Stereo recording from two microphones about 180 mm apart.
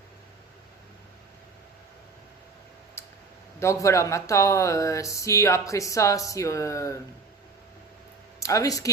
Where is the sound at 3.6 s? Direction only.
15° left (ahead or behind).